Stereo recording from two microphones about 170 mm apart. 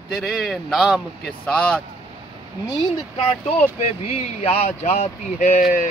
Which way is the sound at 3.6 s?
35° left (ahead or behind).